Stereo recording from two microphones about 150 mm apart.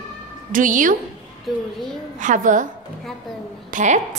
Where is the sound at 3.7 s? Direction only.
55° right (ahead or behind).